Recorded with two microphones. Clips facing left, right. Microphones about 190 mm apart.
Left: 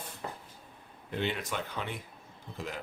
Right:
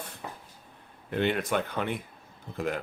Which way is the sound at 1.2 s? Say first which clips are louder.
Right 7 dB; 55° right (ahead or behind).